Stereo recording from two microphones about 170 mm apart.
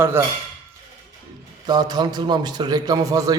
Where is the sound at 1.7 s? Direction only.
25° right (ahead or behind).